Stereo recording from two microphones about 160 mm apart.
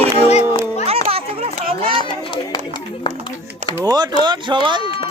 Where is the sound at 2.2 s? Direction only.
30° left (ahead or behind).